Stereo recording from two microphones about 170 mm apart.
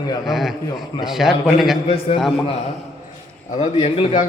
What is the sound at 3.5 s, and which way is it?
Speech, 40° left (ahead or behind).